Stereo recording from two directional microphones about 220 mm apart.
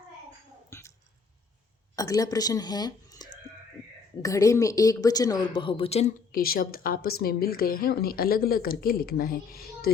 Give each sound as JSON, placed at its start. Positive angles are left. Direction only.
{"t": 0.7, "sound": "a sound", "side_deg": 10}
{"t": 2.0, "sound": "speech", "side_deg": 15}
{"t": 6.3, "sound": "speech", "side_deg": 40}